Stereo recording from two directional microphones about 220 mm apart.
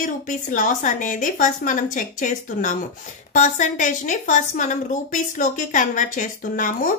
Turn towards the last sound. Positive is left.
turn(degrees=40)  # may be behind; listen again after turning